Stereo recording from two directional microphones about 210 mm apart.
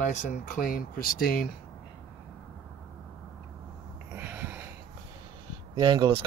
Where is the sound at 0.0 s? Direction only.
35° left (ahead or behind).